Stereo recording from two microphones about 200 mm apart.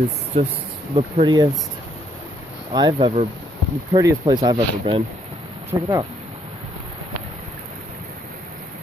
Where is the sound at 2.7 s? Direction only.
20° right (ahead or behind).